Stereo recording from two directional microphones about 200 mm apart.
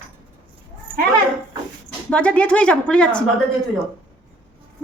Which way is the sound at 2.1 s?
5° left (ahead or behind).